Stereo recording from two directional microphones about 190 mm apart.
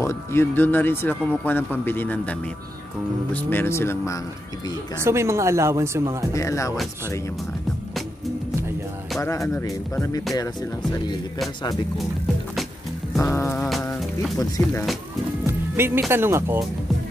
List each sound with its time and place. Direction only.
0.0 s speech: 15° left (ahead or behind)
3.3 s speech: 10° left (ahead or behind)
4.9 s speech: 15° right (ahead or behind)
6.3 s speech: 15° left (ahead or behind)
9.2 s speech: 15° left (ahead or behind)
13.2 s speech: 15° left (ahead or behind)
13.7 s music: centre (ahead or behind)
14.4 s speech: 15° left (ahead or behind)
15.4 s speech: 10° right (ahead or behind)